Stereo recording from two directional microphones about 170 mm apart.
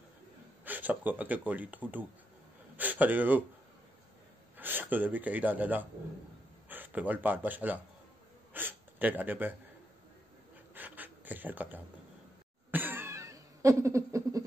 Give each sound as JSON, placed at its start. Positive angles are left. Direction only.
{"t": 0.7, "sound": "speech", "side_deg": -10}
{"t": 4.6, "sound": "speech", "side_deg": -10}
{"t": 8.5, "sound": "gasp", "side_deg": -10}
{"t": 10.7, "sound": "a sound", "side_deg": -10}